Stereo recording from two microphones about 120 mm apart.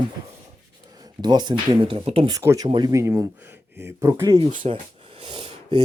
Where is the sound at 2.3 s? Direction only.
25° right (ahead or behind).